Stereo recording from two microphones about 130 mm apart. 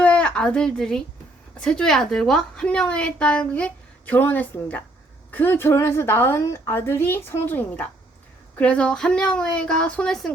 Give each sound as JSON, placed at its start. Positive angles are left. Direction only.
{"t": 0.0, "sound": "a woman's voice", "side_deg": 10}